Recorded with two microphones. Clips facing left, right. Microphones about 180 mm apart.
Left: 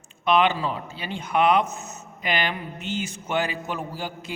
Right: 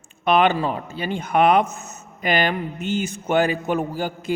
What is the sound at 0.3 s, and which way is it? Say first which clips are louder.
A man's voice: right 3 dB; 50° right (ahead or behind).